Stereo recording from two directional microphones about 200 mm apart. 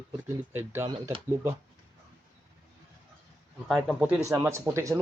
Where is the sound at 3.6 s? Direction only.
Centre (ahead or behind).